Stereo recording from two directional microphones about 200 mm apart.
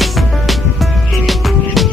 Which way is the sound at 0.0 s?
Centre (ahead or behind).